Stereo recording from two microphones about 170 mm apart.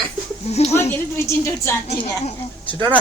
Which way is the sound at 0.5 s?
40° left (ahead or behind).